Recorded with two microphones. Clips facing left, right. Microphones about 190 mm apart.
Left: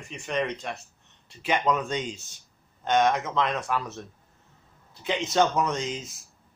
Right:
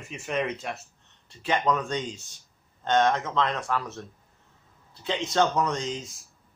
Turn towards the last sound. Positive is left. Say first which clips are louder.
# even
turn(degrees=20)  # may be behind; listen again after turning